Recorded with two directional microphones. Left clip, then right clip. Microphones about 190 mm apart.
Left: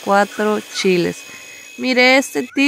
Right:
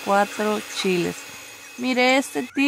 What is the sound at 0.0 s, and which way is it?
Speech, 20° left (ahead or behind).